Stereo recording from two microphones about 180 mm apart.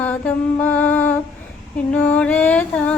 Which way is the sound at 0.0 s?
10° left (ahead or behind).